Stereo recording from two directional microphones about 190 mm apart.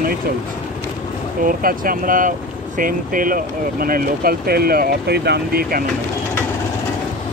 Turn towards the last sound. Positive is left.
turn(degrees=-55)  # may be behind; listen again after turning